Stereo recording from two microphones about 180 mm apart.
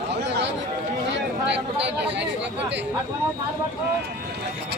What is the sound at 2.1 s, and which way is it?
Speech, 75° right (ahead or behind).